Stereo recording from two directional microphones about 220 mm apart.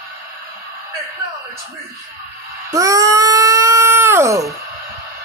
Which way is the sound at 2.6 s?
15° right (ahead or behind).